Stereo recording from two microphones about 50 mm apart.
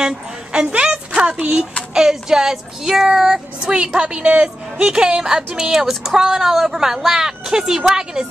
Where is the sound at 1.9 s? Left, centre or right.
Centre.